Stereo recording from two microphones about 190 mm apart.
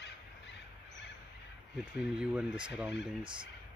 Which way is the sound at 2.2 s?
5° right (ahead or behind).